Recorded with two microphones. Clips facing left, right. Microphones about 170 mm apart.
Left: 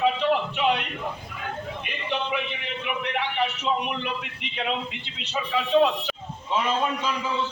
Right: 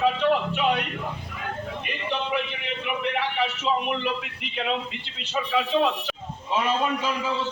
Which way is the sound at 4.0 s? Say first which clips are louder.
Right 3 dB; centre (ahead or behind).